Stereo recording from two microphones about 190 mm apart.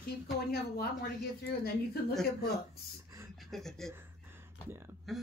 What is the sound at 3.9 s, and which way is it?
Gasp, 10° right (ahead or behind).